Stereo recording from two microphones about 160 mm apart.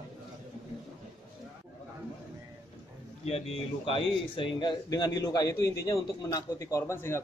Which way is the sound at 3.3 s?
35° left (ahead or behind).